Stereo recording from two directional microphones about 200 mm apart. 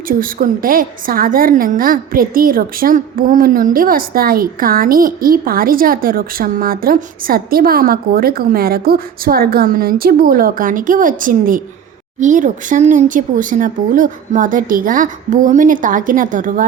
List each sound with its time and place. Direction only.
0.1 s a woman's voice: 45° right (ahead or behind)